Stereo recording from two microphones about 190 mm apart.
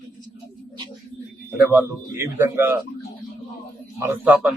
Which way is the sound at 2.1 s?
15° right (ahead or behind).